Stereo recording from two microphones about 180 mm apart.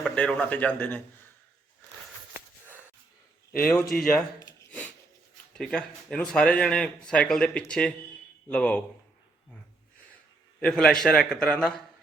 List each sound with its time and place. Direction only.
0.0 s a man's voice: 5° left (ahead or behind)
3.7 s speech: 5° left (ahead or behind)
5.5 s speech: 5° left (ahead or behind)
10.6 s speech: 5° left (ahead or behind)